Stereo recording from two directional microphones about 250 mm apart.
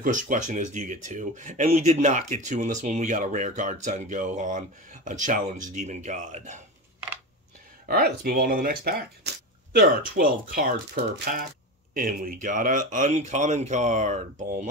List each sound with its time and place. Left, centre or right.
0.0 s speech: right
7.9 s speech: right